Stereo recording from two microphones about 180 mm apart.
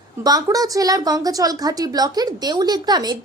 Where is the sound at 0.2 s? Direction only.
20° right (ahead or behind).